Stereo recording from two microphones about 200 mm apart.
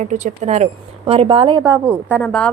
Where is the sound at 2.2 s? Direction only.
5° left (ahead or behind).